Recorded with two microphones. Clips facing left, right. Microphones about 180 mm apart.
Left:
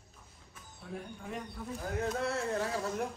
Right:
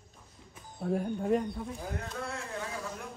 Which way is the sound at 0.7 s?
50° right (ahead or behind).